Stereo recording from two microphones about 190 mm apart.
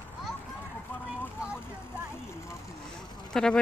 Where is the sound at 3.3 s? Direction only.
5° left (ahead or behind).